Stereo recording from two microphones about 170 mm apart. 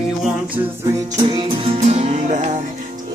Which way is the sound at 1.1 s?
35° right (ahead or behind).